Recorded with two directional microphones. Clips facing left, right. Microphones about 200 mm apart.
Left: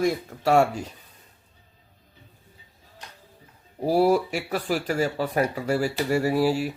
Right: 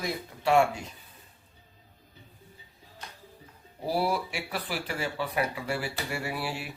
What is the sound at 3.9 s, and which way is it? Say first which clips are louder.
Speech: left 9 dB; 45° left (ahead or behind).